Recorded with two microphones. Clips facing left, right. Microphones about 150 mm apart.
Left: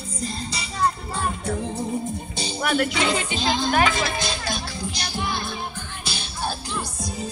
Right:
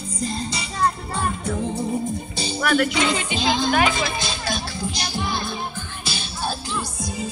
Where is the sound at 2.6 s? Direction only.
25° left (ahead or behind).